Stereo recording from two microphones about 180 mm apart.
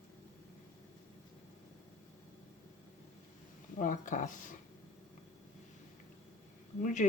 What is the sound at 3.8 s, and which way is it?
Speech, 45° left (ahead or behind).